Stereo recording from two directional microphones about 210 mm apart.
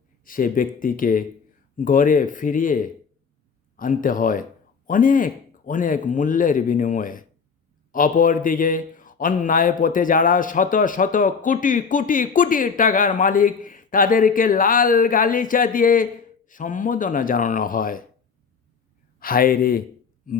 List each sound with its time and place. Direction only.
0.3 s speech: 40° left (ahead or behind)
19.2 s speech: 45° left (ahead or behind)